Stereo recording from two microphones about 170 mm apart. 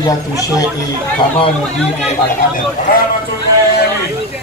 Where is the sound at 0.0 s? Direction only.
20° left (ahead or behind).